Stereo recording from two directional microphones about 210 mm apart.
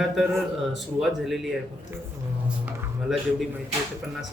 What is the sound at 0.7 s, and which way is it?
Speech, centre (ahead or behind).